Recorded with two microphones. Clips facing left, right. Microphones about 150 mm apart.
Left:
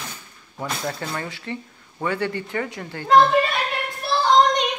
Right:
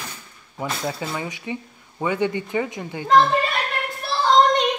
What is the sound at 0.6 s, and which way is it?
Speech, 5° right (ahead or behind).